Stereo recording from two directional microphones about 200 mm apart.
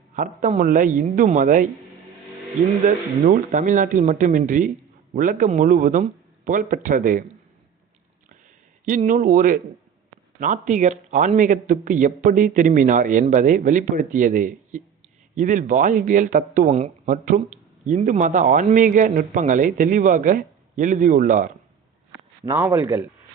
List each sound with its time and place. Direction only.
0.2 s speech: 40° right (ahead or behind)
2.8 s speech: 40° right (ahead or behind)
8.8 s speech: 40° right (ahead or behind)
22.4 s speech: 10° right (ahead or behind)